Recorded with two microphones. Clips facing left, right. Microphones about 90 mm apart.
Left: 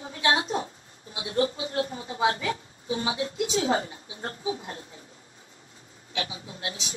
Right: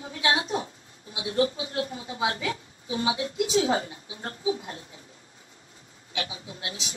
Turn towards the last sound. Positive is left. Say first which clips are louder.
# left 1 dB
turn(degrees=35)  # may be behind; listen again after turning